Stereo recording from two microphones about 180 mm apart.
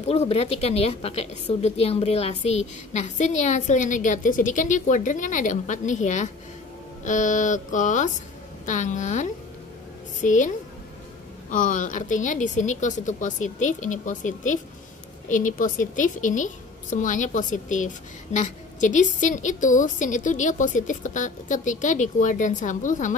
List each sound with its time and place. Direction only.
0.1 s a woman's voice: 35° left (ahead or behind)
11.5 s a woman's voice: 45° left (ahead or behind)